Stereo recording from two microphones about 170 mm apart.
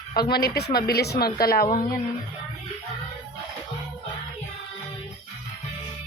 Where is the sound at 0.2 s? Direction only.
65° left (ahead or behind).